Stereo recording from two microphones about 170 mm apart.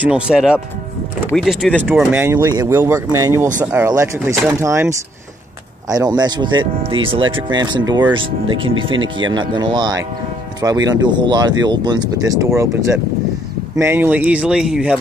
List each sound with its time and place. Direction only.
0.0 s speech: 5° right (ahead or behind)